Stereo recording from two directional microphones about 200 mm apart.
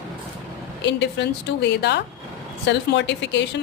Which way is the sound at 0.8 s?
60° left (ahead or behind).